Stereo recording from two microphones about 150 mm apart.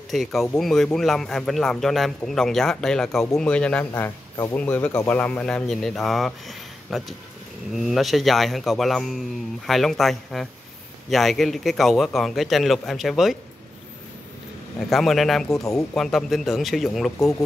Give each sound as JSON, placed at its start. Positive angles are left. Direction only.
{"t": 0.1, "sound": "speech", "side_deg": 0}
{"t": 3.9, "sound": "speech", "side_deg": 20}
{"t": 4.6, "sound": "speech", "side_deg": 10}
{"t": 14.9, "sound": "speech", "side_deg": 0}